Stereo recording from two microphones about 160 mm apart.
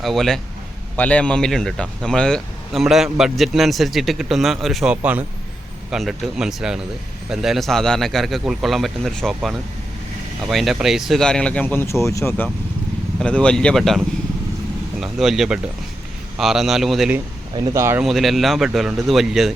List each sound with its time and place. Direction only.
0.0 s a man's voice: centre (ahead or behind)
17.6 s speech: 15° right (ahead or behind)
18.0 s a man's voice: centre (ahead or behind)